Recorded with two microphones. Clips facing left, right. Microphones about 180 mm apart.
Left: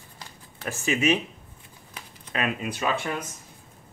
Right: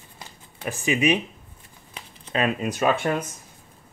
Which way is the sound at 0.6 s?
15° right (ahead or behind).